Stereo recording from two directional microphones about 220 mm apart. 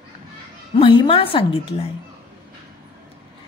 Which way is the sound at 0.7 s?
25° left (ahead or behind).